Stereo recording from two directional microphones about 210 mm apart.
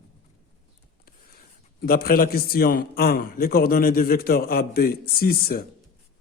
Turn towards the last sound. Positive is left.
turn(degrees=45)  # may be behind; listen again after turning